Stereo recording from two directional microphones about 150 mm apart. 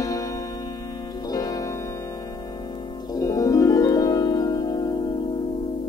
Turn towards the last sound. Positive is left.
turn(degrees=25)  # may be behind; listen again after turning